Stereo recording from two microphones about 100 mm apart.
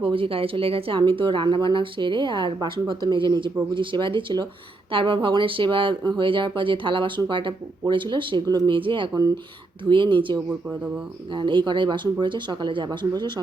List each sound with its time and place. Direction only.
0.0 s speech: 60° right (ahead or behind)
9.1 s speech: 40° right (ahead or behind)
9.9 s speech: 55° right (ahead or behind)